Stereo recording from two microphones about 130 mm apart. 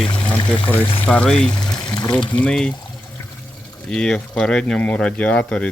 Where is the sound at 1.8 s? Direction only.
30° left (ahead or behind).